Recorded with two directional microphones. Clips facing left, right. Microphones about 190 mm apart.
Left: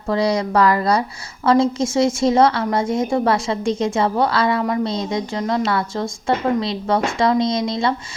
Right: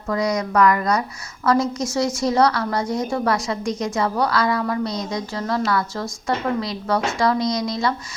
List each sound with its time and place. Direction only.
0.1 s a woman's voice: 30° left (ahead or behind)